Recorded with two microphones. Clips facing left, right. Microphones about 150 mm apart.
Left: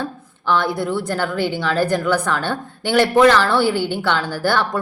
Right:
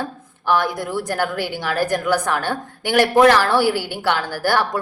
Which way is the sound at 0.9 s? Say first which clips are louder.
Left 1 dB; 10° right (ahead or behind).